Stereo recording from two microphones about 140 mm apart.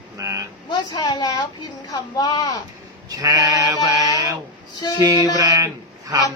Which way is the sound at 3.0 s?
30° right (ahead or behind).